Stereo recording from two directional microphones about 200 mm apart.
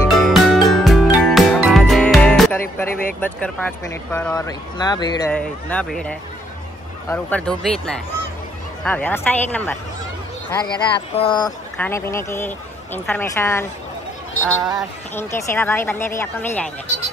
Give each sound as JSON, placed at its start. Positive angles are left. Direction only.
{"t": 0.1, "sound": "music", "side_deg": 0}
{"t": 3.2, "sound": "speech", "side_deg": 10}
{"t": 5.3, "sound": "speech", "side_deg": 5}
{"t": 10.5, "sound": "speech", "side_deg": 25}
{"t": 11.7, "sound": "speech", "side_deg": 10}